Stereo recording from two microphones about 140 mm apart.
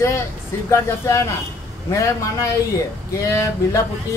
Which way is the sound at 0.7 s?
20° left (ahead or behind).